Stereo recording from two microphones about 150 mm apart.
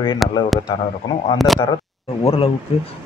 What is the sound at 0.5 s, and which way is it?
Speech, centre (ahead or behind).